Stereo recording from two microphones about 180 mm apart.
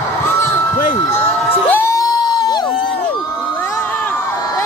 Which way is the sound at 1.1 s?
10° left (ahead or behind).